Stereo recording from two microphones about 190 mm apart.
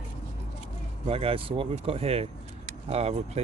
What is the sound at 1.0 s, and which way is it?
Speech, 30° right (ahead or behind).